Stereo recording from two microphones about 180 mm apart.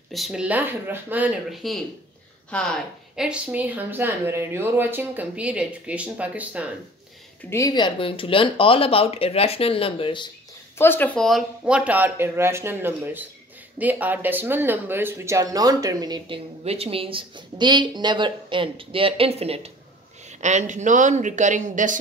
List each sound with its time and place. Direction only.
0.1 s speech: 5° right (ahead or behind)
7.4 s speech: 15° left (ahead or behind)
10.8 s speech: 10° left (ahead or behind); by 16.3 s 20° right (ahead or behind)
16.6 s a man's voice: 35° right (ahead or behind)